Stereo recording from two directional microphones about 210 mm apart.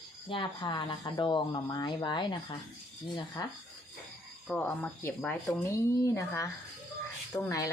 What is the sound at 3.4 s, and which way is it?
Speech, 20° left (ahead or behind).